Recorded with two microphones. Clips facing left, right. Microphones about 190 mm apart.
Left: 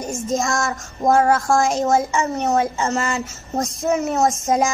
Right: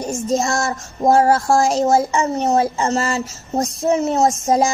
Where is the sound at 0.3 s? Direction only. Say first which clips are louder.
Right 2 dB; 35° right (ahead or behind).